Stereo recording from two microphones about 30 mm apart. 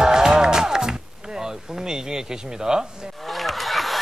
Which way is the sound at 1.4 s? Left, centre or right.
Right.